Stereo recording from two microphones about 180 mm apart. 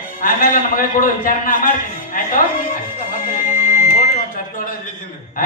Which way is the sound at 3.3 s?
45° left (ahead or behind).